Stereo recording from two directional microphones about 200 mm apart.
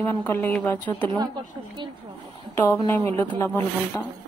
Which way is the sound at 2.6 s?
20° left (ahead or behind).